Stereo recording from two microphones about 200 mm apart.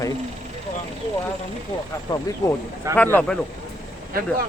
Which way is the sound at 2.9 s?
10° left (ahead or behind).